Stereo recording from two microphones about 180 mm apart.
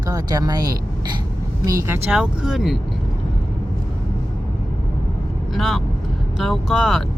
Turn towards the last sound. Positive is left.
turn(degrees=0)  # may be behind; listen again after turning